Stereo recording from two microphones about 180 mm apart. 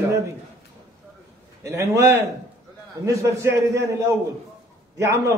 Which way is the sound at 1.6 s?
15° right (ahead or behind).